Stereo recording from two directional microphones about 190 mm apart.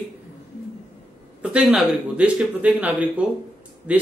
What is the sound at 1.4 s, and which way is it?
Speech, 5° right (ahead or behind).